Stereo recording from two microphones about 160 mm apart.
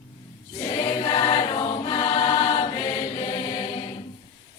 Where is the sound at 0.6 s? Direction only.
30° left (ahead or behind).